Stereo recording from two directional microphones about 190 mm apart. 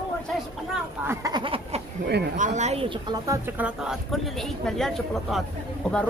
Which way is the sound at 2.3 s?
40° right (ahead or behind).